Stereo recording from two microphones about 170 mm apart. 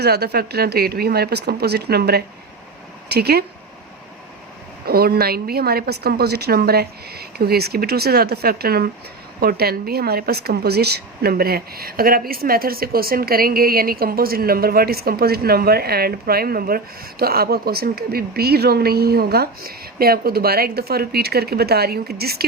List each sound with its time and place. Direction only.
0.0 s a woman's voice: 70° right (ahead or behind)
4.9 s a woman's voice: 65° right (ahead or behind)